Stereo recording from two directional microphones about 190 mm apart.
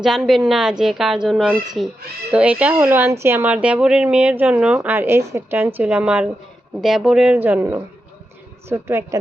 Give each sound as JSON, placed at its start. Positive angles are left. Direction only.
{"t": 0.0, "sound": "a woman's voice", "side_deg": -5}